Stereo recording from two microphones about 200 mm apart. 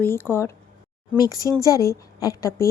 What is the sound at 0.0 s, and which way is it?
A woman's voice, 10° left (ahead or behind).